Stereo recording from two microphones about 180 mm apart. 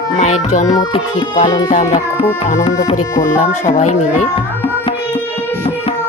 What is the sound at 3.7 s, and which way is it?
Speech, 40° left (ahead or behind).